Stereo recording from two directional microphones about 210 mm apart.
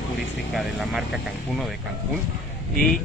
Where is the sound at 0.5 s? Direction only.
Centre (ahead or behind).